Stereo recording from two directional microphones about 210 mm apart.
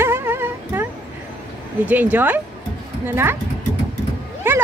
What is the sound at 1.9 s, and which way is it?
Speech, 10° right (ahead or behind).